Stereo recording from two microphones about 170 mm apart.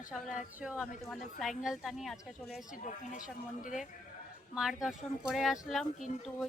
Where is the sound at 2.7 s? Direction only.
50° left (ahead or behind).